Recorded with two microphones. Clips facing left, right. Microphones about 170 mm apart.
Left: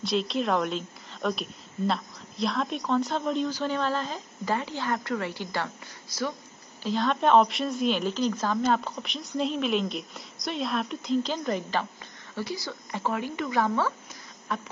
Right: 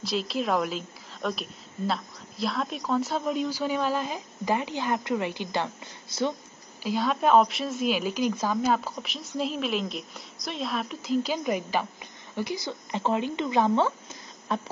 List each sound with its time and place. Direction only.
0.0 s a woman's voice: centre (ahead or behind); by 6.3 s 25° right (ahead or behind)
6.8 s a woman's voice: 10° right (ahead or behind); by 14.7 s 30° right (ahead or behind)